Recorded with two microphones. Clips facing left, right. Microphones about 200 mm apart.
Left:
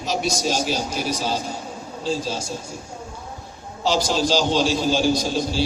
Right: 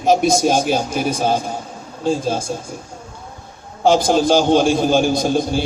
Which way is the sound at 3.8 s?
55° right (ahead or behind).